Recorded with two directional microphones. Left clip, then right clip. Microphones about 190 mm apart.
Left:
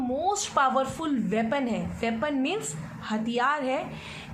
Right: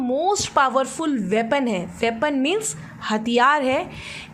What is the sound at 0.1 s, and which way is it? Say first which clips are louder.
A woman's voice: right 7 dB; 45° right (ahead or behind).